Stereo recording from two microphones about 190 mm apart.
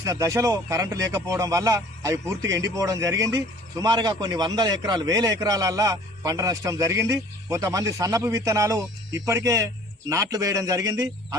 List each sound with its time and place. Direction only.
0.0 s speech: 15° right (ahead or behind)